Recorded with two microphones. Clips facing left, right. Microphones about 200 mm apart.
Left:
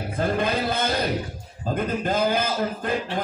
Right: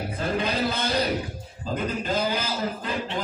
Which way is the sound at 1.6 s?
55° left (ahead or behind).